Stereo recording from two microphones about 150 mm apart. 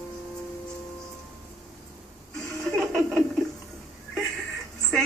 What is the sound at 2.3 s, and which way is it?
Chuckle, 5° left (ahead or behind).